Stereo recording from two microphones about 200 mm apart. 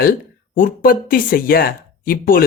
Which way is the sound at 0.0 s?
45° left (ahead or behind).